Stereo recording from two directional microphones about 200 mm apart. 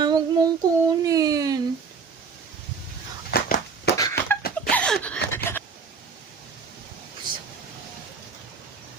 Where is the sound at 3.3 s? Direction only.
50° left (ahead or behind).